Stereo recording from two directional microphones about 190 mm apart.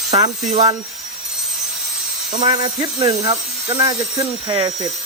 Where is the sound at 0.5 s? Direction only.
35° right (ahead or behind).